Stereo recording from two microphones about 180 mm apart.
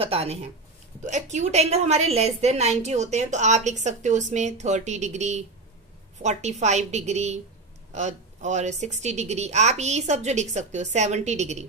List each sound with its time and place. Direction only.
0.0 s a woman's voice: 35° right (ahead or behind)